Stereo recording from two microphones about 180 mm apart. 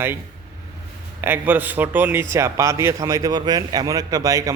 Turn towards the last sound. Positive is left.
turn(degrees=-20)  # may be behind; listen again after turning